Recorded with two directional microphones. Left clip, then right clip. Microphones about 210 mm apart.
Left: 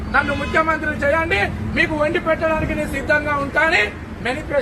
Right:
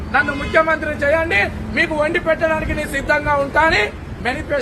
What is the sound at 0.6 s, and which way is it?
A man's voice, 15° right (ahead or behind).